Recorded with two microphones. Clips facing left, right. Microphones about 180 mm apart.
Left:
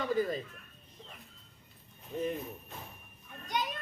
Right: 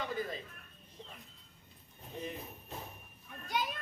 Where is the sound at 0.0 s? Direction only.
40° left (ahead or behind).